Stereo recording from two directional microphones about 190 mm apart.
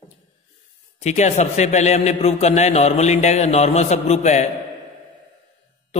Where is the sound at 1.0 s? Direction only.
35° left (ahead or behind).